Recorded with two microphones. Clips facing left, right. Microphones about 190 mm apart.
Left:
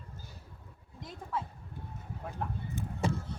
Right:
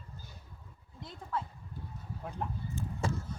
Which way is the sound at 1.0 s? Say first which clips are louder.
Even; 10° left (ahead or behind).